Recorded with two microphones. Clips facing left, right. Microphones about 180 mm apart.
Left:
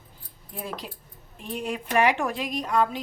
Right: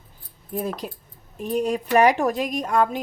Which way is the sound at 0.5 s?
45° right (ahead or behind).